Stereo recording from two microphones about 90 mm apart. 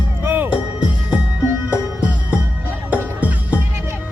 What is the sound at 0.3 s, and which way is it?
Music, 20° right (ahead or behind).